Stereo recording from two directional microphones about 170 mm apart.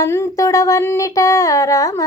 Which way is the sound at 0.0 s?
20° left (ahead or behind).